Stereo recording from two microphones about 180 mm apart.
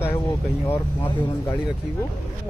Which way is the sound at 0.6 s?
10° left (ahead or behind).